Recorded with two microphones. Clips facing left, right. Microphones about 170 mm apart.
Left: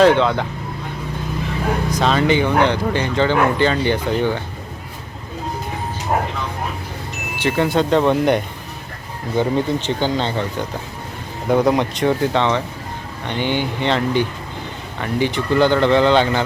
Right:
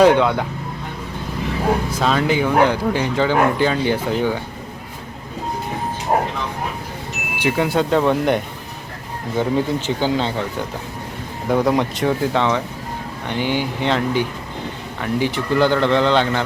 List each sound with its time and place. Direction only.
0.0 s speech: 10° right (ahead or behind)
1.9 s speech: 5° right (ahead or behind)
7.3 s speech: 10° right (ahead or behind)